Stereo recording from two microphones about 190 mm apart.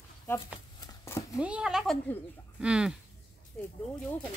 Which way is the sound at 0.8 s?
20° left (ahead or behind).